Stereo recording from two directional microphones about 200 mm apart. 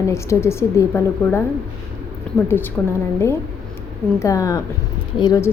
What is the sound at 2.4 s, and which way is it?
Speech, 10° left (ahead or behind).